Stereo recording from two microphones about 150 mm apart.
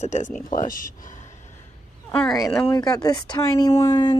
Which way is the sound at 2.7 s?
25° left (ahead or behind).